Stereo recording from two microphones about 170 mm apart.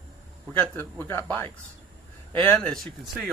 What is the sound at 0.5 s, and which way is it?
Speech, 10° left (ahead or behind).